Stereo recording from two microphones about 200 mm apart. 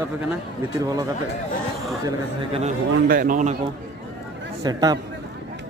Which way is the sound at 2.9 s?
55° right (ahead or behind).